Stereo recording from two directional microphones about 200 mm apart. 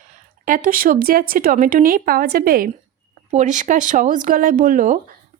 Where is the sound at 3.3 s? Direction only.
35° right (ahead or behind).